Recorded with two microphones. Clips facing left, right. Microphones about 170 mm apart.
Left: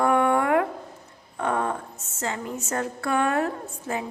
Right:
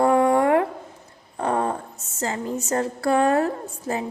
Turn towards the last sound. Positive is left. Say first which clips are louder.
# right 3 dB
turn(degrees=-35)  # may be behind; listen again after turning